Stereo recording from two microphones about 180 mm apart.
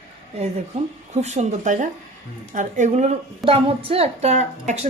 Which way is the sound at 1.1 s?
40° right (ahead or behind).